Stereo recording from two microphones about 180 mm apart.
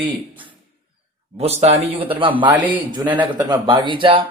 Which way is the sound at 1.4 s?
35° right (ahead or behind).